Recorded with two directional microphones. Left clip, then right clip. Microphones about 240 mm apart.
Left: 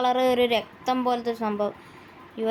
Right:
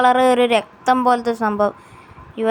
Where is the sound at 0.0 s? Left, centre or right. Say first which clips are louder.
Right 8 dB; centre.